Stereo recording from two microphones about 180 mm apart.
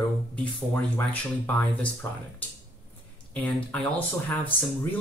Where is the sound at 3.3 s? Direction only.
5° left (ahead or behind).